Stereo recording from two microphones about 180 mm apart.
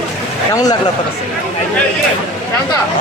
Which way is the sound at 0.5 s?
20° left (ahead or behind).